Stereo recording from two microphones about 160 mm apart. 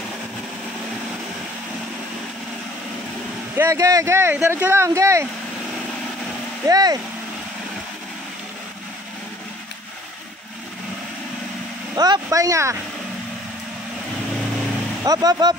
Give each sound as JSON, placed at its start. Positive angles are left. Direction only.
{"t": 3.5, "sound": "speech", "side_deg": -15}
{"t": 6.7, "sound": "speech", "side_deg": -25}
{"t": 11.9, "sound": "speech", "side_deg": -25}
{"t": 15.0, "sound": "speech", "side_deg": -25}